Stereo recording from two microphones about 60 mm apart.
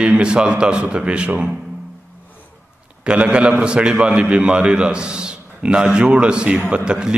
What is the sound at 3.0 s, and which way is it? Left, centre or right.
A man's voice, centre.